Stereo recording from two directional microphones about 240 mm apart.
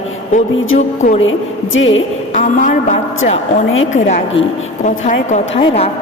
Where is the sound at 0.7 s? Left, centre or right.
Left.